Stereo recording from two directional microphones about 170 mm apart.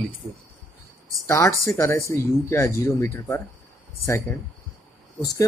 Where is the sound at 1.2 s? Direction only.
15° left (ahead or behind).